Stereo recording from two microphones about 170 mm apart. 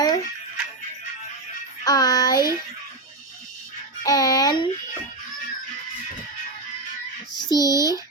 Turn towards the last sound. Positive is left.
turn(degrees=20)  # may be behind; listen again after turning